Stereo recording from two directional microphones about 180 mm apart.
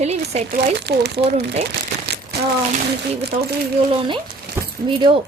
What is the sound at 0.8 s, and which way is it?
Speech, 65° right (ahead or behind).